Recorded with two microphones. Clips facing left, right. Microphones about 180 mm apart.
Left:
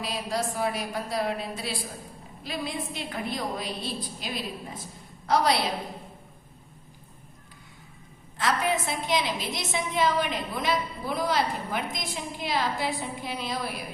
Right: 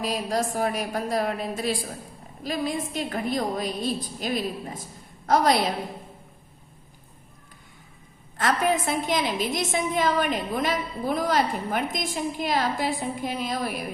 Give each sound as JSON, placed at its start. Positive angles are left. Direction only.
{"t": 0.0, "sound": "a woman's voice", "side_deg": -45}
{"t": 8.4, "sound": "a woman's voice", "side_deg": -50}